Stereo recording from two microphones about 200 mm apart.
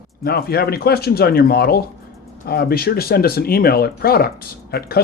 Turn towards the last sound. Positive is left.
turn(degrees=50)  # may be behind; listen again after turning